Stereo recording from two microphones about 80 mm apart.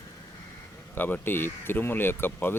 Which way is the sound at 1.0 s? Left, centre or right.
Left.